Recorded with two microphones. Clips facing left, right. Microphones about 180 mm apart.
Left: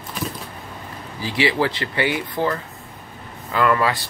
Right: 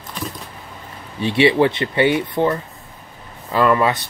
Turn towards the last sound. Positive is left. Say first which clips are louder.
# right 3 dB
turn(degrees=-20)  # may be behind; listen again after turning